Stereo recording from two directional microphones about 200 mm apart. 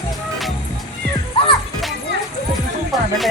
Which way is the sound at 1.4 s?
25° left (ahead or behind).